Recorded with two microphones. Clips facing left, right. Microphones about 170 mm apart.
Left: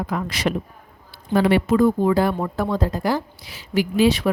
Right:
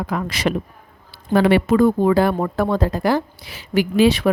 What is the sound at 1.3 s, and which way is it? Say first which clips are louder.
A woman's voice: right 2 dB; 75° right (ahead or behind).